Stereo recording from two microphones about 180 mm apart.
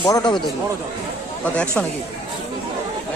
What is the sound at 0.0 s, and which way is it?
Speech, 25° left (ahead or behind).